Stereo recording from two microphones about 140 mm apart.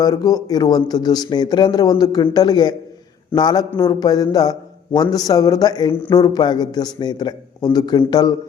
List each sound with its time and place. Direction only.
0.0 s a man's voice: 30° left (ahead or behind)